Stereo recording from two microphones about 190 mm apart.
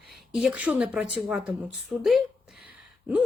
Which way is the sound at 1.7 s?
Centre (ahead or behind).